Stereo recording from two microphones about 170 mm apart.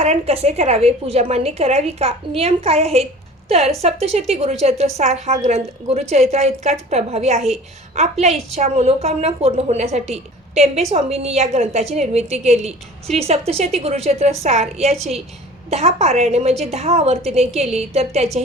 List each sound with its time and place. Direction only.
0.0 s a woman's voice: 35° right (ahead or behind)